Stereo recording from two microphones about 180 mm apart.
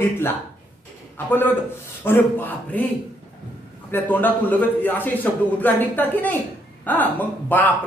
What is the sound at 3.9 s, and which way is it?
Speech, 10° left (ahead or behind).